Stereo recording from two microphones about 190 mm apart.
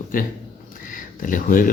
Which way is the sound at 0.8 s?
45° left (ahead or behind).